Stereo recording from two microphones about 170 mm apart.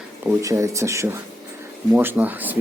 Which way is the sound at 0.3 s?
20° right (ahead or behind).